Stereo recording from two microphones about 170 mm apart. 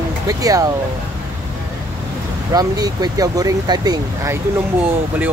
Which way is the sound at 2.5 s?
20° right (ahead or behind).